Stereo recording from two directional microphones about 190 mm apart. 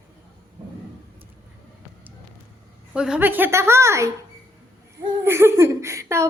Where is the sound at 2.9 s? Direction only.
5° right (ahead or behind).